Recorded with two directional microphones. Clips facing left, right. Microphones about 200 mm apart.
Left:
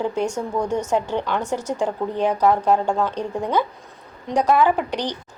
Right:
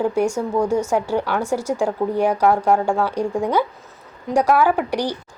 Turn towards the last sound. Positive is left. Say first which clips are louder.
# right 2 dB
turn(degrees=-10)  # may be behind; listen again after turning